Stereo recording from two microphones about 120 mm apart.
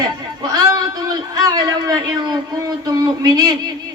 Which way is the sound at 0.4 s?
30° right (ahead or behind).